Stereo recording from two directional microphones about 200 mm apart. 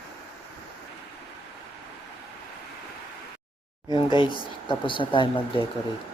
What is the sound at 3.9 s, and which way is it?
Speech, 25° left (ahead or behind).